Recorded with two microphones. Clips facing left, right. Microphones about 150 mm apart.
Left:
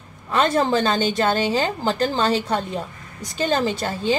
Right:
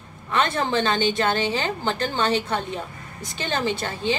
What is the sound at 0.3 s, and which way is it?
A woman's voice, 35° left (ahead or behind).